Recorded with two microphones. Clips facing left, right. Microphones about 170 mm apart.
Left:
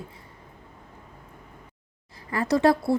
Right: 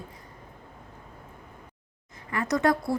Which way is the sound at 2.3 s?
30° left (ahead or behind).